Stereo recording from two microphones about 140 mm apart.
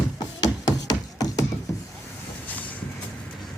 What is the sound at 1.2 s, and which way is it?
Music, 25° left (ahead or behind).